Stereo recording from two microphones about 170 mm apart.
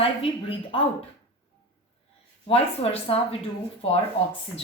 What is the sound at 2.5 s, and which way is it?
Speech, 35° left (ahead or behind).